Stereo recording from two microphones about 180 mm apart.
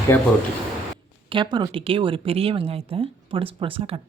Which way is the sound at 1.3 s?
25° right (ahead or behind).